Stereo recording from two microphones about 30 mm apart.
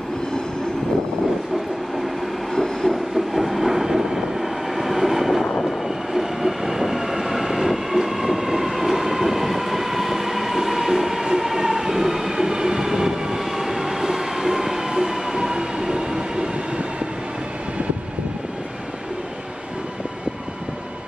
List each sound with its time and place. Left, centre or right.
2.5 s heart murmur: centre
2.9 s train: centre
5.4 s vehicle: centre
6.1 s train: centre